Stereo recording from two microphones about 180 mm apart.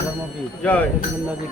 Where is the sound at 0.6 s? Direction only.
5° left (ahead or behind).